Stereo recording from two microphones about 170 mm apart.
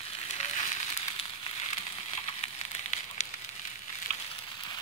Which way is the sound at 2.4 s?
40° left (ahead or behind).